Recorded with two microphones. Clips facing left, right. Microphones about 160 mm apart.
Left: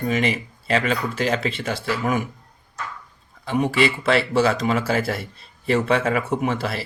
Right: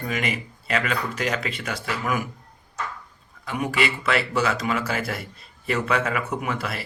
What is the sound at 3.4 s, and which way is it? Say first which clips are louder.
A man's voice: left 5 dB; 30° left (ahead or behind).